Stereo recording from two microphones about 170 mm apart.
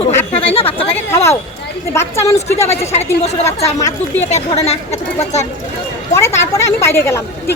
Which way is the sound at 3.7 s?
20° left (ahead or behind).